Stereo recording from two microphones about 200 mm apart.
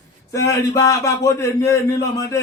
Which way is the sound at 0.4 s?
15° left (ahead or behind).